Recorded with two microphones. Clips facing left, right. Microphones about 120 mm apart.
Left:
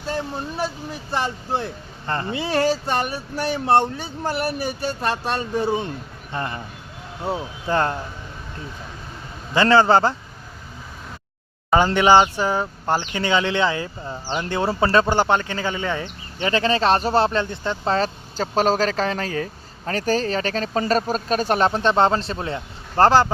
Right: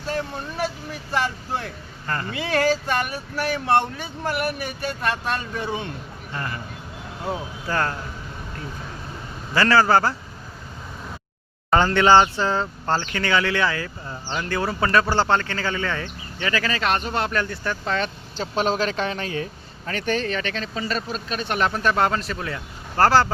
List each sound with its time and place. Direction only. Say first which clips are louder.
1.1 s speech: left 1 dB; 30° left (ahead or behind)
7.7 s speech: left 4 dB; 25° left (ahead or behind)
9.6 s speech: left 2 dB; 25° left (ahead or behind)
11.9 s speech: even; 15° left (ahead or behind)
17.8 s speech: left 6 dB; 35° left (ahead or behind); by 23.3 s 20° left (ahead or behind)